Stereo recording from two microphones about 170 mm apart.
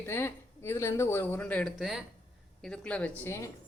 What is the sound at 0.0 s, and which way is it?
Speech, 15° left (ahead or behind).